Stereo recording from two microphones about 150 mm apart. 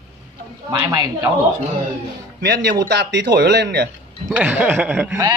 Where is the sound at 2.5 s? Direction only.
90° right.